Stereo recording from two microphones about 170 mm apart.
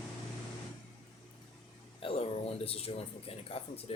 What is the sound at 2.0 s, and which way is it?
Speech, 30° left (ahead or behind).